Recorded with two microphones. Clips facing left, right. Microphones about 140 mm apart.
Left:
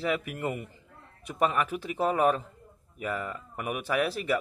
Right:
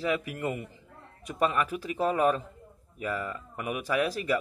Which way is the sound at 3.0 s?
15° left (ahead or behind).